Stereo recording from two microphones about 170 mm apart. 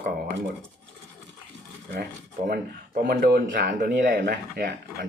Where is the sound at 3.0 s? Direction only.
65° right (ahead or behind).